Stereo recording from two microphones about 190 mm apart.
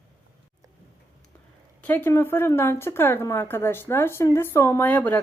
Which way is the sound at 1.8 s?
10° left (ahead or behind).